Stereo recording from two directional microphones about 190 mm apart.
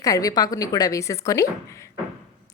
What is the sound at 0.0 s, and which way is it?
A woman's voice, 20° left (ahead or behind).